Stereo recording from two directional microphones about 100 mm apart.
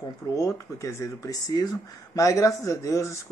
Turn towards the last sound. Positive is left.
turn(degrees=30)  # may be behind; listen again after turning